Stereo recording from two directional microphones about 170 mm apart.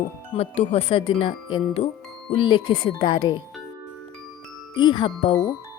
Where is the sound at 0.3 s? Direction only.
35° left (ahead or behind).